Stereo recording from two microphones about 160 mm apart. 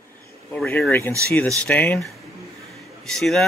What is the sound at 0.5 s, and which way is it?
Speech, 5° left (ahead or behind).